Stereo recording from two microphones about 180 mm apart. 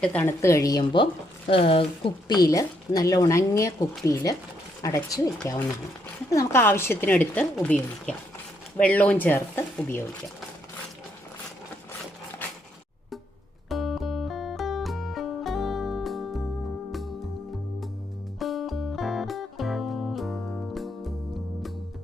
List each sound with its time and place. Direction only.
0.0 s speech: 5° left (ahead or behind)
6.3 s speech: 15° left (ahead or behind)
12.4 s a sound: 10° left (ahead or behind)
13.7 s music: centre (ahead or behind)
18.3 s music: centre (ahead or behind)